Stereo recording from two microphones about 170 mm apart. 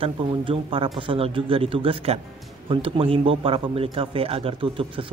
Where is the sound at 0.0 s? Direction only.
30° right (ahead or behind).